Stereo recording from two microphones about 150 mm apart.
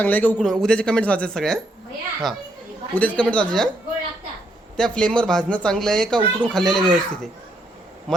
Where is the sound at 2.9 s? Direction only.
10° left (ahead or behind).